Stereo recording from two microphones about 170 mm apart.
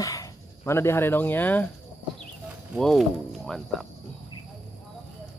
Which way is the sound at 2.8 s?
Centre (ahead or behind).